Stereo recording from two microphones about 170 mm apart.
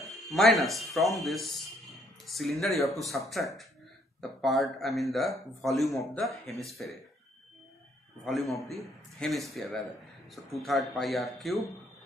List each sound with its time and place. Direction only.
0.3 s a man's voice: centre (ahead or behind)
8.3 s a man's voice: centre (ahead or behind)